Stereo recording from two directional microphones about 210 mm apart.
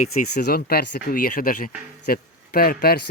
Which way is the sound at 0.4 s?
50° left (ahead or behind).